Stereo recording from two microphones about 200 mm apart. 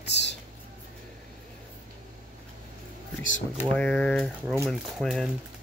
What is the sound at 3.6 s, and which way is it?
Speech, 5° left (ahead or behind).